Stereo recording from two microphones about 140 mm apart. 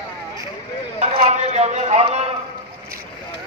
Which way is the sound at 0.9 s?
50° right (ahead or behind).